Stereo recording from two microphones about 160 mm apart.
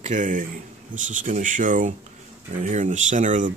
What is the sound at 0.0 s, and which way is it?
A man's voice, 50° right (ahead or behind).